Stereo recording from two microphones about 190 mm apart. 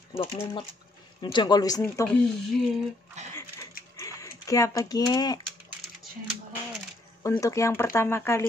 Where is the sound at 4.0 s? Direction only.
15° left (ahead or behind).